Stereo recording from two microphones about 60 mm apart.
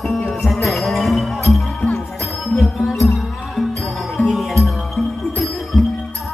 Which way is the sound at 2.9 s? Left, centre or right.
Centre.